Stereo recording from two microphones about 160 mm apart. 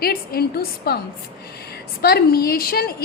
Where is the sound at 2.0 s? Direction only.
75° left (ahead or behind).